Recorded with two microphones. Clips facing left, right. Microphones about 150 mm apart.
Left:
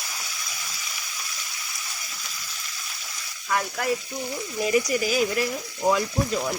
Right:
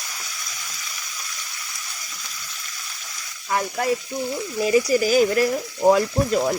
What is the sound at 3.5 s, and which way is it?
Frying, 25° right (ahead or behind).